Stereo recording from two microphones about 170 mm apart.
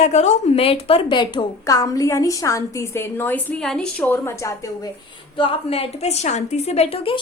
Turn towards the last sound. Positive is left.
turn(degrees=35)  # may be behind; listen again after turning